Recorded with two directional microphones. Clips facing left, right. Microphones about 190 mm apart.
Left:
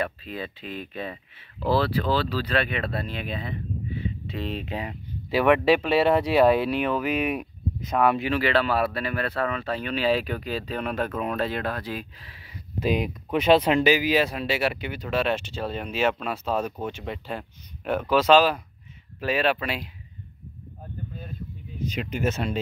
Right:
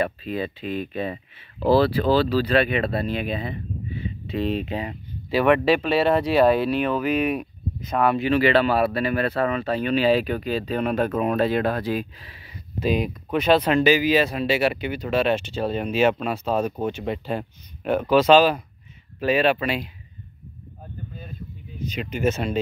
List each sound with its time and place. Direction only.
0.0 s speech: 10° right (ahead or behind)
2.3 s speech: 10° right (ahead or behind); by 8.4 s 10° left (ahead or behind)
8.4 s speech: centre (ahead or behind)
12.8 s speech: 15° left (ahead or behind); by 17.0 s 10° right (ahead or behind)
17.0 s speech: 20° right (ahead or behind)
18.1 s speech: centre (ahead or behind)
22.0 s speech: centre (ahead or behind)